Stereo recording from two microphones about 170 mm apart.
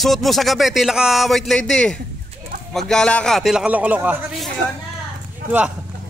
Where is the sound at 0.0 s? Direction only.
Centre (ahead or behind).